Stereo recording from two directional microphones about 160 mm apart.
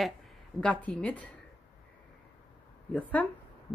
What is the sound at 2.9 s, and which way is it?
Speech, 10° left (ahead or behind).